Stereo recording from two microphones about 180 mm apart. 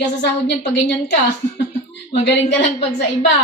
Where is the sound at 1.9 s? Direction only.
70° left (ahead or behind).